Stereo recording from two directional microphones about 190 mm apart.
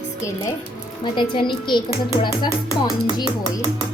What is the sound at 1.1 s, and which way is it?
Speech, 25° left (ahead or behind).